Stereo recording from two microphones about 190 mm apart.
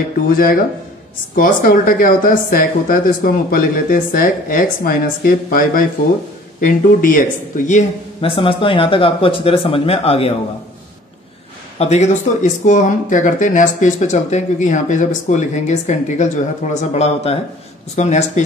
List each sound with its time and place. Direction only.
0.3 s a woman's voice: 50° left (ahead or behind)
8.4 s speech: 25° left (ahead or behind)
11.8 s speech: 35° left (ahead or behind)